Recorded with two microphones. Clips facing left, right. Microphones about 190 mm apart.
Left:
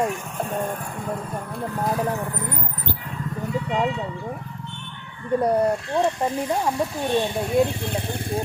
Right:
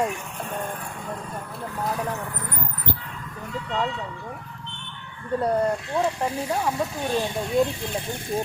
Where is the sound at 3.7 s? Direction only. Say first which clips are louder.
Left 2 dB; 15° left (ahead or behind).